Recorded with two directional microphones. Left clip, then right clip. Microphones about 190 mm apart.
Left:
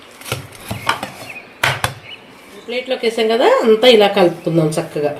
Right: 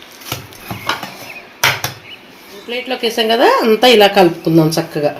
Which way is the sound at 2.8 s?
60° right (ahead or behind).